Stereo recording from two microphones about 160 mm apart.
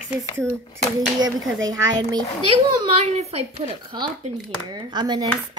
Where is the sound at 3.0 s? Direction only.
40° right (ahead or behind).